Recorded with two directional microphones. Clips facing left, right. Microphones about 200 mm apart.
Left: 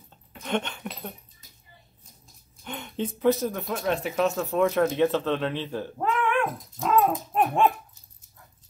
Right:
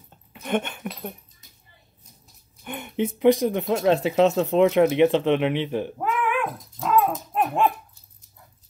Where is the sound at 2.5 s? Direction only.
10° right (ahead or behind).